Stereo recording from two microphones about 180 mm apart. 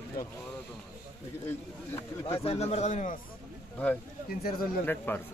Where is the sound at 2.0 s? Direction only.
15° left (ahead or behind).